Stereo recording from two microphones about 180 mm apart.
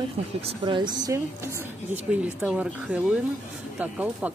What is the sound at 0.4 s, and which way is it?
Speech, 30° right (ahead or behind).